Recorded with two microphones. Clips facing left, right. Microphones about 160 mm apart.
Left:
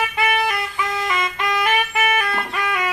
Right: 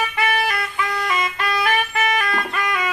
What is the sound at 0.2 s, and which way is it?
Vehicle horn, 20° left (ahead or behind).